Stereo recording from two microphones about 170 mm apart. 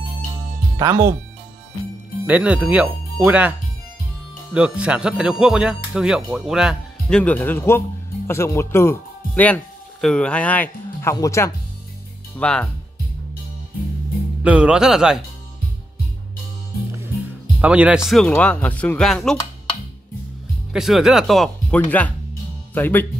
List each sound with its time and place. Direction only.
0.7 s speech: 15° right (ahead or behind)
2.2 s speech: 10° right (ahead or behind)
4.6 s speech: 5° right (ahead or behind); by 11.5 s 15° left (ahead or behind)
12.4 s speech: 5° left (ahead or behind)
14.4 s speech: 5° right (ahead or behind)
17.6 s speech: 5° right (ahead or behind)
20.7 s speech: 5° right (ahead or behind)